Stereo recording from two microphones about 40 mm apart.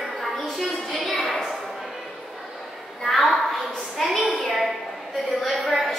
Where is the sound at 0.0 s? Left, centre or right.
Centre.